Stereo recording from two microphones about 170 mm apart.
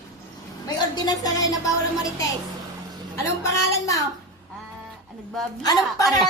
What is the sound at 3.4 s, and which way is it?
Speech, 20° left (ahead or behind).